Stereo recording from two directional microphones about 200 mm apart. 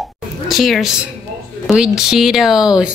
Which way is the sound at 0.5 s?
Centre (ahead or behind).